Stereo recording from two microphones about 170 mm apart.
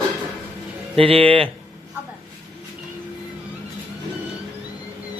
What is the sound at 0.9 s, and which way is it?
Speech, 35° right (ahead or behind).